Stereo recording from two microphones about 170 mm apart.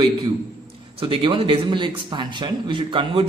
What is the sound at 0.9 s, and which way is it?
Speech, 30° right (ahead or behind).